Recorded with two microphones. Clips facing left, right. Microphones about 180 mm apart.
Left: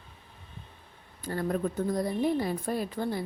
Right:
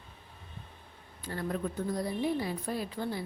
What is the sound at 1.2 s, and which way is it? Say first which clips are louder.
A woman's voice: left 5 dB; 45° left (ahead or behind).